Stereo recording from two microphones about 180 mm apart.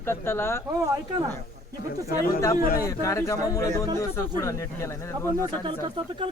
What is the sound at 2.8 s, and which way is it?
Speech, 15° left (ahead or behind).